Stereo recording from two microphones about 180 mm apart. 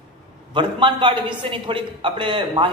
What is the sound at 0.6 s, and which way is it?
A man's voice, 25° right (ahead or behind).